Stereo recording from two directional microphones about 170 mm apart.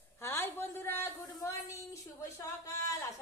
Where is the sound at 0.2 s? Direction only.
15° left (ahead or behind).